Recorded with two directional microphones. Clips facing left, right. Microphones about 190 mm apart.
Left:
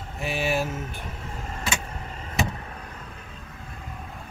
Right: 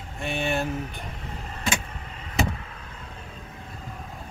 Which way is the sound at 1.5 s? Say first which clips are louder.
Right 2 dB; 40° left (ahead or behind).